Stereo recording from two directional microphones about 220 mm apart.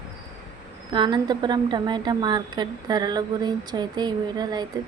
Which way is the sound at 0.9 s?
20° right (ahead or behind).